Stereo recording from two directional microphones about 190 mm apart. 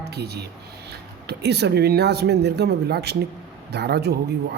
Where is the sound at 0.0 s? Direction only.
60° right (ahead or behind).